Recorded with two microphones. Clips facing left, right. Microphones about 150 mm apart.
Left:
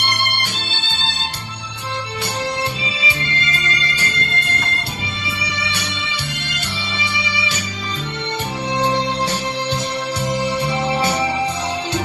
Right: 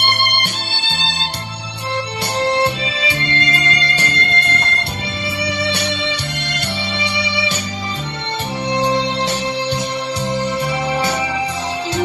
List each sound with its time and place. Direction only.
0.0 s music: 60° right (ahead or behind)
2.4 s music: 70° right (ahead or behind)